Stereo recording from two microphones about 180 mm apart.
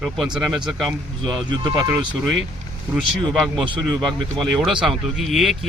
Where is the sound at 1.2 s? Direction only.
20° right (ahead or behind).